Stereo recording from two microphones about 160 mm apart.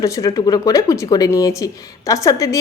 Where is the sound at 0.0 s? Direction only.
20° left (ahead or behind).